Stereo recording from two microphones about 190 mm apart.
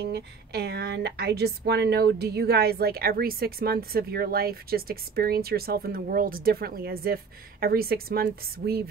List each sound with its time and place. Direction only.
0.0 s a woman's voice: 60° right (ahead or behind)